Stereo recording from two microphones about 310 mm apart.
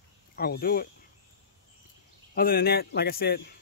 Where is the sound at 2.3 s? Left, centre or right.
Left.